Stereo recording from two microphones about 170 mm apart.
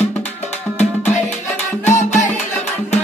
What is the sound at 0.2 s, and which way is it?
Music, 40° left (ahead or behind).